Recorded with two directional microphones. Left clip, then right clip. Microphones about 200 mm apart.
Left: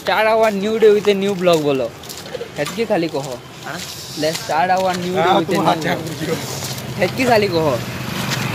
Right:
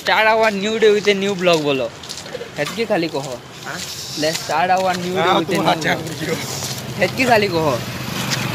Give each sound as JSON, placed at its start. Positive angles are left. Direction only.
{"t": 0.0, "sound": "speech", "side_deg": 0}
{"t": 5.1, "sound": "speech", "side_deg": 40}
{"t": 5.6, "sound": "speech", "side_deg": 25}
{"t": 7.0, "sound": "speech", "side_deg": -5}